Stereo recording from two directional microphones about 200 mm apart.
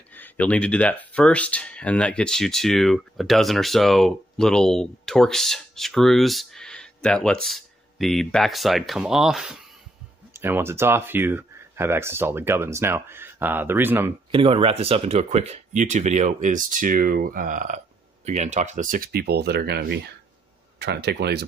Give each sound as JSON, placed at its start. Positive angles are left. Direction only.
{"t": 0.1, "sound": "speech", "side_deg": 10}
{"t": 14.3, "sound": "speech", "side_deg": -25}